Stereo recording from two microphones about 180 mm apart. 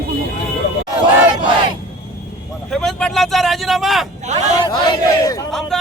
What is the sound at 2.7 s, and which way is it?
Speech, centre (ahead or behind).